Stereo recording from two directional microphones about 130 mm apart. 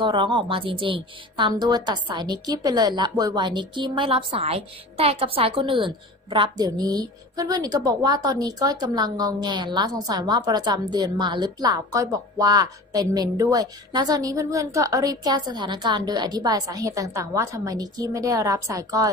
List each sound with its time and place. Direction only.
0.0 s a woman's voice: 40° right (ahead or behind)
6.6 s a woman's voice: 30° right (ahead or behind)